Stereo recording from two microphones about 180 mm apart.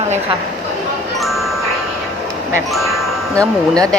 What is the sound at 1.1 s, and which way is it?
Music, centre (ahead or behind).